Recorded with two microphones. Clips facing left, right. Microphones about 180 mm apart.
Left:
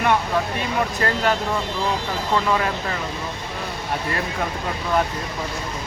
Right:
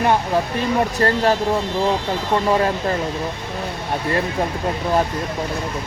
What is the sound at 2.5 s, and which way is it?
Speech, 35° right (ahead or behind).